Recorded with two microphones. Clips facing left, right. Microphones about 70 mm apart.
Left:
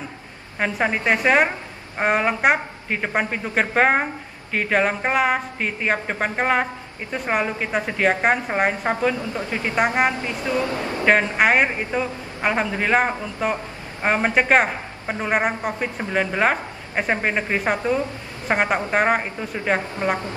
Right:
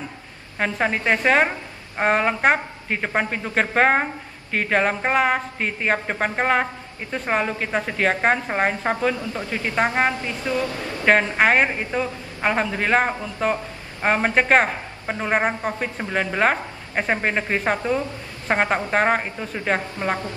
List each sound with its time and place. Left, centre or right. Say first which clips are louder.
0.6 s a woman's voice: even; centre
9.1 s a woman's voice: left 1 dB; left
10.1 s a woman's voice: left 1 dB; left
11.1 s a man's voice: even; centre